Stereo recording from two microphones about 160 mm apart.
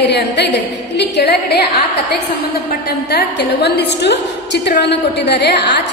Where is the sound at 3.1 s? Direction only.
90° left.